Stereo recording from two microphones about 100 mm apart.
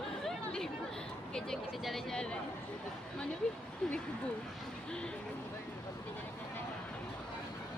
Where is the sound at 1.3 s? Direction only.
5° left (ahead or behind).